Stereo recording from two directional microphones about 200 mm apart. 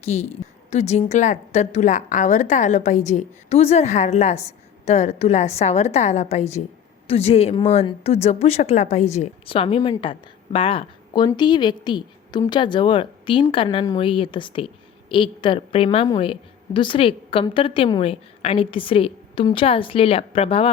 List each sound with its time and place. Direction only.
0.0 s a woman's voice: 30° left (ahead or behind)